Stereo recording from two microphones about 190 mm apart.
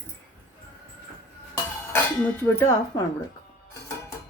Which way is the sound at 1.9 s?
10° left (ahead or behind).